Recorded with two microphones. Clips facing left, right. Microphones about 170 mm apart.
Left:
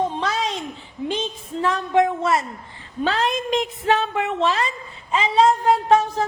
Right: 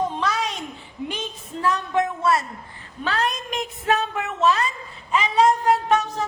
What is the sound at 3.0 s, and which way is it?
Child singing, 25° left (ahead or behind).